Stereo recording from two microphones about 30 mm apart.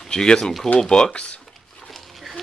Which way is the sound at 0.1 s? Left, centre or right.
Left.